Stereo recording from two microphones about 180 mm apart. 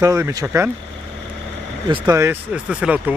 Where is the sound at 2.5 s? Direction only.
5° right (ahead or behind).